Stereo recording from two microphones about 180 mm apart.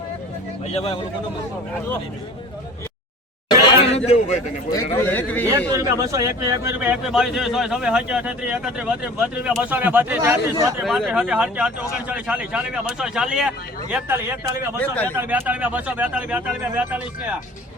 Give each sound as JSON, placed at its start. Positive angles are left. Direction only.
{"t": 0.7, "sound": "speech", "side_deg": 35}
{"t": 3.7, "sound": "a sound", "side_deg": 35}
{"t": 4.7, "sound": "a man's voice", "side_deg": 15}
{"t": 5.7, "sound": "a man's voice", "side_deg": -20}
{"t": 10.8, "sound": "speech", "side_deg": -5}
{"t": 14.8, "sound": "a man's voice", "side_deg": 10}
{"t": 15.1, "sound": "a man's voice", "side_deg": -15}